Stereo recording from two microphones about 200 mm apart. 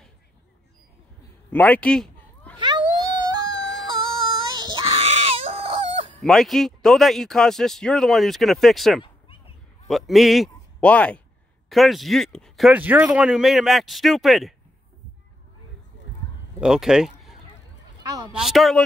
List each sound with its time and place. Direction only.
1.5 s cat: 10° left (ahead or behind)
2.6 s a sound: 20° right (ahead or behind)
4.5 s baby cry: 20° right (ahead or behind)
6.2 s a man's voice: centre (ahead or behind)
16.5 s speech: 5° right (ahead or behind)